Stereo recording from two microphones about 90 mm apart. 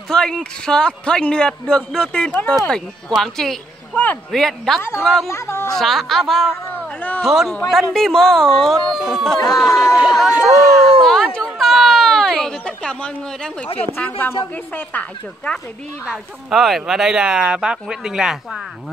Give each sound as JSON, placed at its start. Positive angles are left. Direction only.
{"t": 0.1, "sound": "a man's voice", "side_deg": 10}
{"t": 3.9, "sound": "a man's voice", "side_deg": 15}
{"t": 4.3, "sound": "speech", "side_deg": 5}
{"t": 5.3, "sound": "speech", "side_deg": 30}
{"t": 5.8, "sound": "speech", "side_deg": 0}
{"t": 6.7, "sound": "a sound", "side_deg": 20}
{"t": 7.2, "sound": "speech", "side_deg": 0}
{"t": 10.4, "sound": "a sound", "side_deg": 0}
{"t": 13.9, "sound": "a man's voice", "side_deg": 20}
{"t": 16.1, "sound": "speech", "side_deg": 0}